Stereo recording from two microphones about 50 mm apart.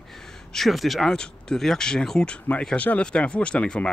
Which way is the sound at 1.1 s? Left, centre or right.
Centre.